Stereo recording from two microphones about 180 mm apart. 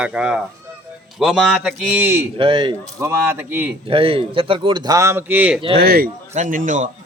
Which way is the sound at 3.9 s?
30° right (ahead or behind).